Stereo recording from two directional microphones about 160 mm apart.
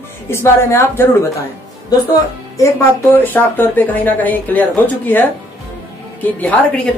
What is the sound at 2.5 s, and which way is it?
Speech, 20° left (ahead or behind).